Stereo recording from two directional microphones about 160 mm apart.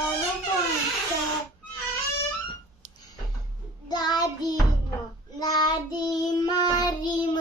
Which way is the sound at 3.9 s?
25° left (ahead or behind).